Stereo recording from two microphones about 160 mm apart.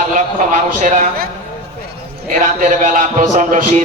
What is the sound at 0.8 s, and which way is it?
Speech, 55° right (ahead or behind).